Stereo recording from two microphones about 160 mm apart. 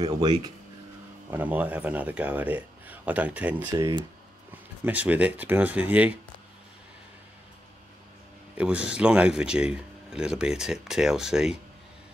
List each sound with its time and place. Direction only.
0.0 s speech: 25° right (ahead or behind)
1.3 s speech: 10° right (ahead or behind)
3.7 s speech: 25° right (ahead or behind)
4.8 s speech: 10° right (ahead or behind)
8.5 s speech: 5° right (ahead or behind)